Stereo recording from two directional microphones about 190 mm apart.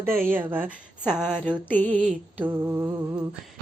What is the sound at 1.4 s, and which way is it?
Mantra, 10° left (ahead or behind).